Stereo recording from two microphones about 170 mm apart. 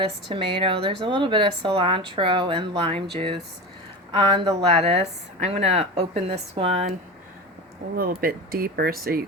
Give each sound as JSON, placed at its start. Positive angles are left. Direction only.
{"t": 0.0, "sound": "a woman's voice", "side_deg": -30}
{"t": 7.9, "sound": "speech", "side_deg": -60}